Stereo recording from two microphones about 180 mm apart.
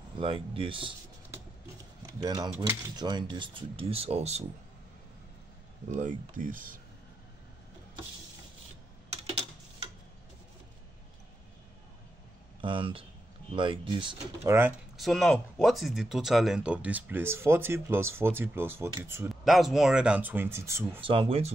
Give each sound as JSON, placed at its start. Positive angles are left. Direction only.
{"t": 0.2, "sound": "speech", "side_deg": -30}
{"t": 2.0, "sound": "speech", "side_deg": -20}
{"t": 5.9, "sound": "speech", "side_deg": -45}
{"t": 12.6, "sound": "speech", "side_deg": -30}
{"t": 14.4, "sound": "speech", "side_deg": -15}
{"t": 15.0, "sound": "speech", "side_deg": 0}
{"t": 19.4, "sound": "speech", "side_deg": 0}
{"t": 21.0, "sound": "speech", "side_deg": -30}